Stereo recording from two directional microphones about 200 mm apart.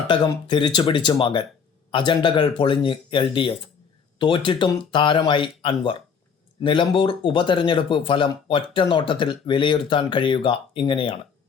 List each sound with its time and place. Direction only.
0.1 s speech: 20° left (ahead or behind)